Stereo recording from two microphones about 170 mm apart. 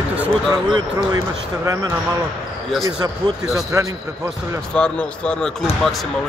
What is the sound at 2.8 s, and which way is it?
Speech, 20° right (ahead or behind).